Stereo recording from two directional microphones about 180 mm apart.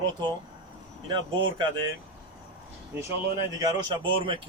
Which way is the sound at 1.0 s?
25° right (ahead or behind).